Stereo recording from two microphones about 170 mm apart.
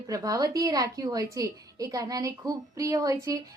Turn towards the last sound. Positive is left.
turn(degrees=-20)  # may be behind; listen again after turning